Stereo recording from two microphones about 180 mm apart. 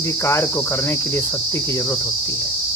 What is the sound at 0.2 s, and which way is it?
Cricket, 15° left (ahead or behind).